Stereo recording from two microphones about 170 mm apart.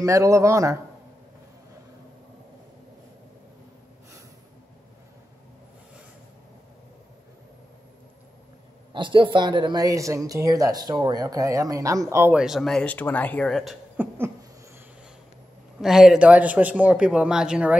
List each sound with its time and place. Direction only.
0.0 s a man's voice: 20° right (ahead or behind)
8.9 s speech: 30° right (ahead or behind)
12.4 s speech: centre (ahead or behind)
13.9 s a sound: 15° right (ahead or behind)
15.8 s a man's voice: centre (ahead or behind)